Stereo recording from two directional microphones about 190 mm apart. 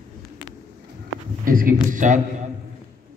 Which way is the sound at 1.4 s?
45° right (ahead or behind).